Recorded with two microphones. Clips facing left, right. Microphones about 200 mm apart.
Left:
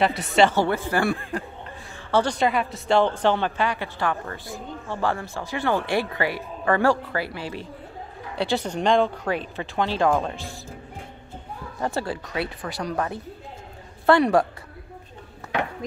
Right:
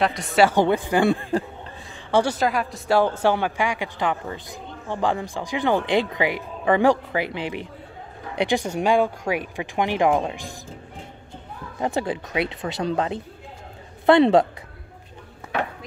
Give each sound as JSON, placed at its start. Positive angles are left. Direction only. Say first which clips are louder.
{"t": 0.4, "sound": "speech", "louder": "right 2 dB", "side_deg": -15}
{"t": 11.8, "sound": "speech", "louder": "right 3 dB", "side_deg": -15}